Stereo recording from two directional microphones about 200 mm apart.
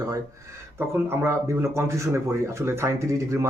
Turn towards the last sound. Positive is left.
turn(degrees=-15)  # may be behind; listen again after turning